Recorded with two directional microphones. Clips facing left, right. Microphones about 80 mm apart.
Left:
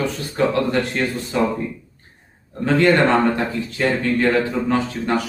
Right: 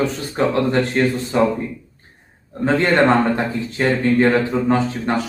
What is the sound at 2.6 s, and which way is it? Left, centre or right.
Speech, right.